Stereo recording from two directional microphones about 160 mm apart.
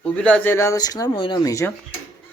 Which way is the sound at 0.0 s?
5° left (ahead or behind).